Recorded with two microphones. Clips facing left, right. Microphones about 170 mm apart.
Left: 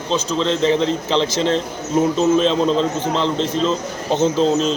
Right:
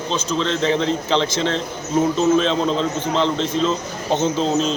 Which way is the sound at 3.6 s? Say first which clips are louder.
Even; 35° left (ahead or behind).